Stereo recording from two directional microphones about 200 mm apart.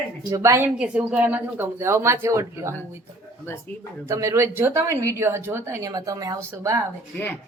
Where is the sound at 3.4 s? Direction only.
10° left (ahead or behind).